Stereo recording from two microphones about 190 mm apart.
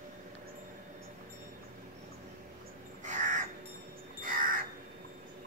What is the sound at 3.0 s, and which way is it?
Crow, 40° right (ahead or behind).